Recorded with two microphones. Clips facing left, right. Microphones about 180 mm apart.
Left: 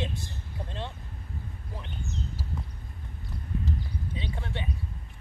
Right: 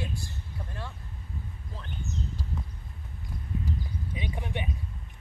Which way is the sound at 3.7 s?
15° right (ahead or behind).